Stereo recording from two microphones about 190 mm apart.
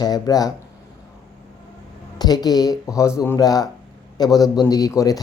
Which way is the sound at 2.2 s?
20° left (ahead or behind).